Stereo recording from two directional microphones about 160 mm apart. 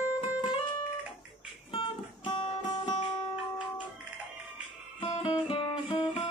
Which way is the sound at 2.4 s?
30° left (ahead or behind).